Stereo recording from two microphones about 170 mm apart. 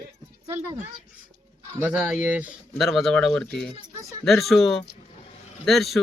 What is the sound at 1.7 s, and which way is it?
A man's voice, 10° right (ahead or behind).